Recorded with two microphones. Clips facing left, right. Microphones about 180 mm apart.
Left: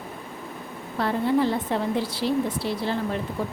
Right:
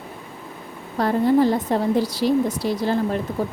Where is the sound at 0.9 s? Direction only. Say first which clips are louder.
Right 5 dB; 40° right (ahead or behind).